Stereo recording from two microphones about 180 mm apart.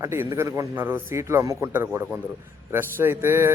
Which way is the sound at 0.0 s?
15° right (ahead or behind).